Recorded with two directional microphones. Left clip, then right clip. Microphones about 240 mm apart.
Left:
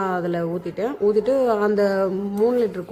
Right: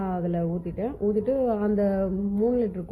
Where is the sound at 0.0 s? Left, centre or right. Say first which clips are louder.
Left 6 dB; centre.